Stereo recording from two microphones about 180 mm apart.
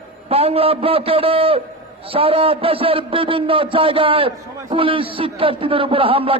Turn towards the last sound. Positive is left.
turn(degrees=-30)  # may be behind; listen again after turning